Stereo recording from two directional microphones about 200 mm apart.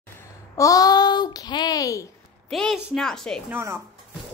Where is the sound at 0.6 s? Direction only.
15° left (ahead or behind).